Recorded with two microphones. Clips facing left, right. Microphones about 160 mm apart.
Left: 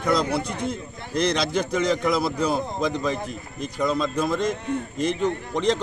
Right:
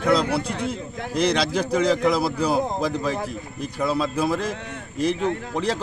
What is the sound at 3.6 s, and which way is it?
A man's voice, 5° right (ahead or behind).